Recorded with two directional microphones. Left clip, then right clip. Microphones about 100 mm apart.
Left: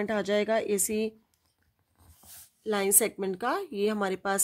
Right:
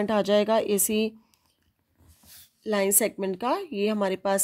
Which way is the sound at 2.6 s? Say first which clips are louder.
Right 3 dB; 20° right (ahead or behind).